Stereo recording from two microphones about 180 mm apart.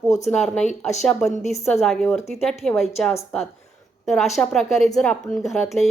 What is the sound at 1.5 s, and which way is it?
Speech, 35° left (ahead or behind).